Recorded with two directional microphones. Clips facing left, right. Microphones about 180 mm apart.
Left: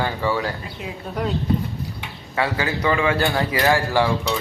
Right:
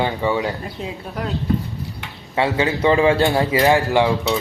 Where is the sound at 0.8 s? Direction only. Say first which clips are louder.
Right 3 dB; 35° right (ahead or behind).